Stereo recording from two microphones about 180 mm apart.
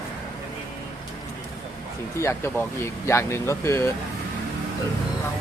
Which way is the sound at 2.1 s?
15° left (ahead or behind).